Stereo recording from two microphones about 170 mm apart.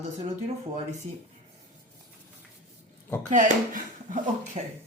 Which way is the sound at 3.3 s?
50° right (ahead or behind).